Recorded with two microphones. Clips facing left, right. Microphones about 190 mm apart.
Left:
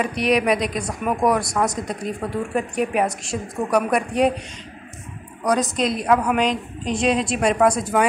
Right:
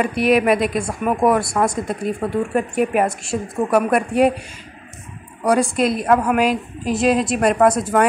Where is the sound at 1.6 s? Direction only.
25° right (ahead or behind).